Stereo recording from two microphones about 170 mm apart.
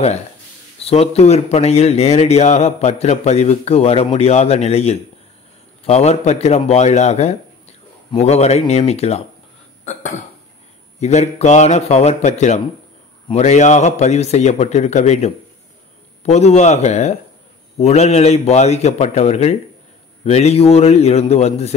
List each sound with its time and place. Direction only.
0.7 s speech: 35° left (ahead or behind)
11.0 s speech: 40° left (ahead or behind)